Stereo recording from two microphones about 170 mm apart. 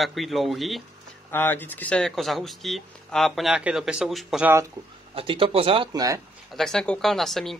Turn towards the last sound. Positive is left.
turn(degrees=0)  # may be behind; listen again after turning